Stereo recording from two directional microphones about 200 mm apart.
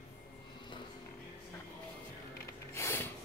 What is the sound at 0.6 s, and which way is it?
Music, 25° left (ahead or behind).